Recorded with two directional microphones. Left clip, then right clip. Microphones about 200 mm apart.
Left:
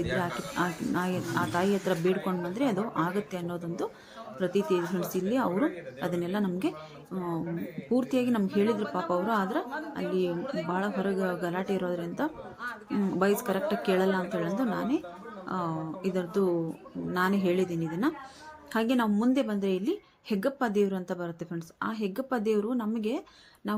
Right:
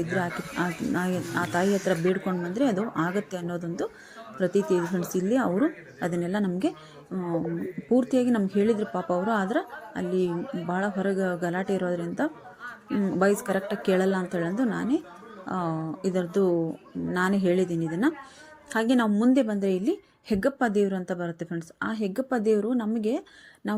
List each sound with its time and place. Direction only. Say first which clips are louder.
0.1 s speech: right 2 dB; 15° right (ahead or behind)
7.9 s a woman's voice: right 4 dB; 15° right (ahead or behind)